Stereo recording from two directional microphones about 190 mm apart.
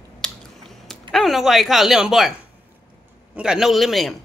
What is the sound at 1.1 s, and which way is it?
Speech, centre (ahead or behind).